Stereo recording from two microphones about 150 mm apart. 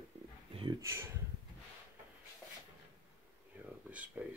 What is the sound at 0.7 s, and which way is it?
Speech, 20° right (ahead or behind).